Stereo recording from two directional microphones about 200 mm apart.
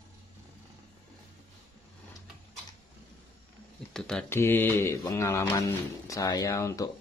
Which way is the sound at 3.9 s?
5° left (ahead or behind).